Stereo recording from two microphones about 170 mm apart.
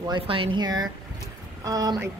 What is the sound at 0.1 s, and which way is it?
A woman's voice, 30° right (ahead or behind).